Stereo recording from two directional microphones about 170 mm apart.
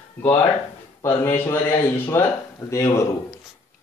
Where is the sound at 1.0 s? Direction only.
15° left (ahead or behind).